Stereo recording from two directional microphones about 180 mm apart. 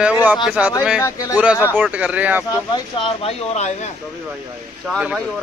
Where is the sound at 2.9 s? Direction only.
30° left (ahead or behind).